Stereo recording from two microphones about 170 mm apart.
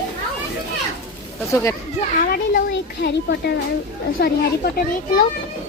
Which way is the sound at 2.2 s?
60° left (ahead or behind).